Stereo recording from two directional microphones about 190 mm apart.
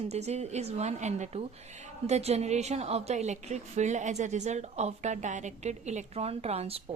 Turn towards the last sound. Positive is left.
turn(degrees=-30)  # may be behind; listen again after turning